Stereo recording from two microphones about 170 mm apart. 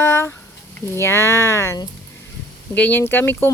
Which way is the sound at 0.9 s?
15° left (ahead or behind).